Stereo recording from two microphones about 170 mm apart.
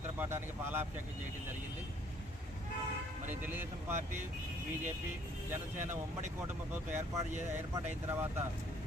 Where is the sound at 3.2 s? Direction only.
10° right (ahead or behind).